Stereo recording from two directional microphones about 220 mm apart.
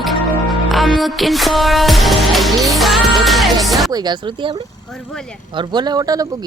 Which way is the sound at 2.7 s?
Centre (ahead or behind).